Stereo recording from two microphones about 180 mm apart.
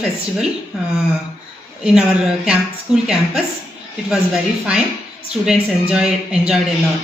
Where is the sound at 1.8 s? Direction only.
5° right (ahead or behind).